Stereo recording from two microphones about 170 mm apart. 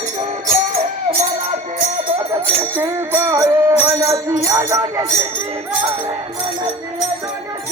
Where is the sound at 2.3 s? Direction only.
10° right (ahead or behind).